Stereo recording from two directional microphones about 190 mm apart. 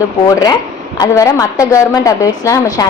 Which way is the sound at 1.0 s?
15° left (ahead or behind).